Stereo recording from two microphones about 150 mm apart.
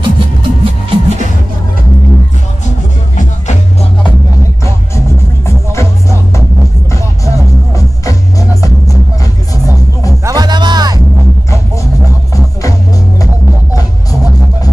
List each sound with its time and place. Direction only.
0.0 s music: 35° right (ahead or behind)
5.7 s music: 20° left (ahead or behind)
10.2 s music: 25° right (ahead or behind)